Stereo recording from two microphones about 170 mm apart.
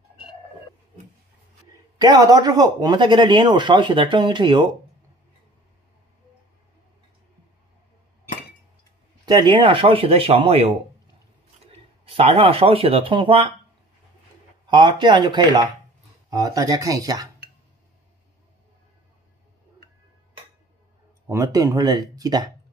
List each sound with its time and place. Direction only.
2.0 s speech: 20° right (ahead or behind)
9.2 s speech: 25° right (ahead or behind)
12.0 s speech: 35° right (ahead or behind)
14.7 s speech: 25° right (ahead or behind)
21.3 s speech: 15° right (ahead or behind)